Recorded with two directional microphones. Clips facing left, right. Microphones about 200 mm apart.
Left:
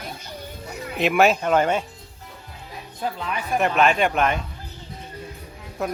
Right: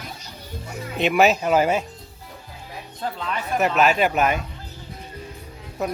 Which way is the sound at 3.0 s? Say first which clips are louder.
Left 1 dB; 15° left (ahead or behind).